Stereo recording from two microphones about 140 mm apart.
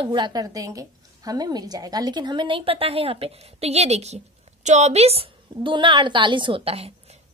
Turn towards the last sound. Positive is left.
turn(degrees=-45)  # may be behind; listen again after turning